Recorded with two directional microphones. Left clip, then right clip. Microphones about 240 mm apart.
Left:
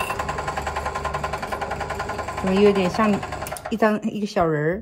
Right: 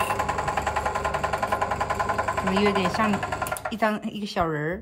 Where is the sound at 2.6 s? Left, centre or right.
Right.